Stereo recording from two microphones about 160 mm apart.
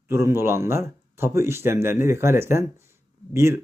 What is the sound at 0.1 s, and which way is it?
Speech, 15° right (ahead or behind).